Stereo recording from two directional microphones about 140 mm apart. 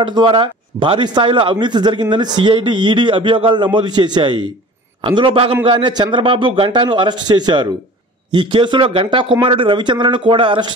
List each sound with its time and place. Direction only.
0.0 s speech: 35° right (ahead or behind)